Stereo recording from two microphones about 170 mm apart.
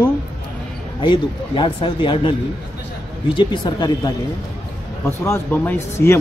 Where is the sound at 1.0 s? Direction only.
25° left (ahead or behind).